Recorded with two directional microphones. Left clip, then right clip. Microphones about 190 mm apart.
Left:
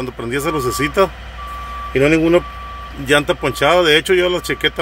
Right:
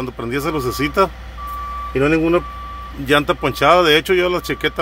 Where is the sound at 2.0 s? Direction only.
15° left (ahead or behind).